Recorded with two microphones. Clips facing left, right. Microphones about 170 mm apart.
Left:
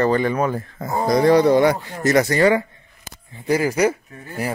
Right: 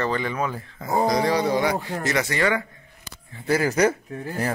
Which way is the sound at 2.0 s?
40° left (ahead or behind).